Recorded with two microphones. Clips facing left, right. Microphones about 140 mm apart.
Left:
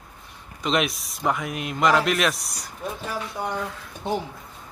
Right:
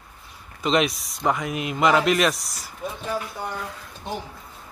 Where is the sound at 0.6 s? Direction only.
Centre (ahead or behind).